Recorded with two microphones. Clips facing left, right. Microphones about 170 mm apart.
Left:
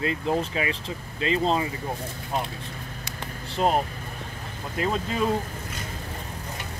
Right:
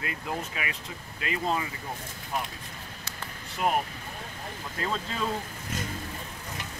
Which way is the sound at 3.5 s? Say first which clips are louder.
Left 4 dB; 25° left (ahead or behind).